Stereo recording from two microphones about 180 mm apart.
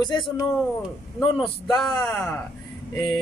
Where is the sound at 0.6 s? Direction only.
Centre (ahead or behind).